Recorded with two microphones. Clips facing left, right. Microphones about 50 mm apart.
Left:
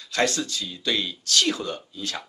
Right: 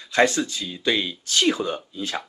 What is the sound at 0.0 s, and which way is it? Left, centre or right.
Speech, right.